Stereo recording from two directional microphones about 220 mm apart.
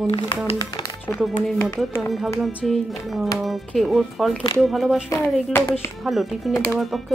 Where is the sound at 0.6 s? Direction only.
15° left (ahead or behind).